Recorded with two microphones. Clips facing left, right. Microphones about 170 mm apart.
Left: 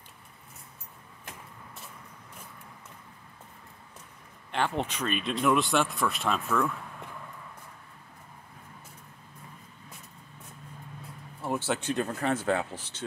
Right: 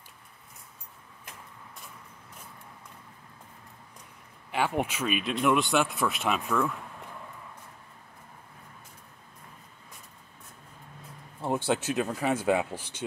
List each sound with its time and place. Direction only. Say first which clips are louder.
4.5 s speech: right 1 dB; 10° right (ahead or behind)
11.4 s a sound: right 3 dB; 20° right (ahead or behind)
11.8 s speech: right 1 dB; 5° right (ahead or behind)